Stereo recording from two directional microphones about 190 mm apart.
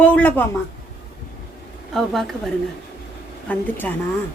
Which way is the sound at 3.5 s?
10° left (ahead or behind).